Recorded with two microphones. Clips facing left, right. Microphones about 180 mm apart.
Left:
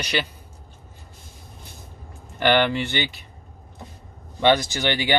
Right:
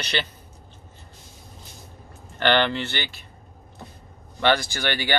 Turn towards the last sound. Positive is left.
turn(degrees=20)  # may be behind; listen again after turning